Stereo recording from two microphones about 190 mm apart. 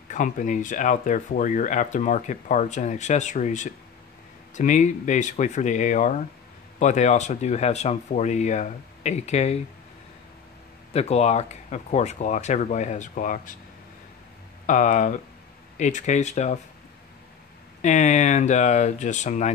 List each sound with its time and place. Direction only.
0.1 s speech: 40° left (ahead or behind)
10.9 s speech: 35° left (ahead or behind)
14.7 s speech: 40° left (ahead or behind)
17.8 s speech: 40° left (ahead or behind)